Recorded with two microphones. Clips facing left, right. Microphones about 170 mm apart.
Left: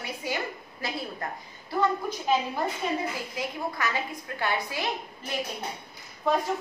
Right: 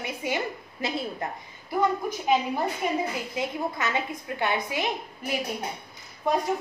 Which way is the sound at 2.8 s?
15° right (ahead or behind).